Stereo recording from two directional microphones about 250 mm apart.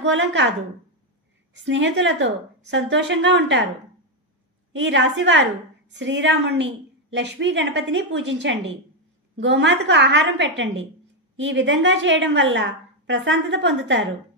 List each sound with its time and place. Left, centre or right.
0.0 s a woman's voice: right
4.7 s a woman's voice: right